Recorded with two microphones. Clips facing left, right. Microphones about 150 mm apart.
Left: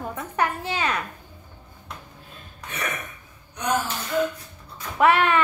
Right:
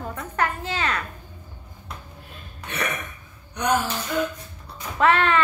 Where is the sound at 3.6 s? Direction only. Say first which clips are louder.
Right 3 dB; 75° right (ahead or behind).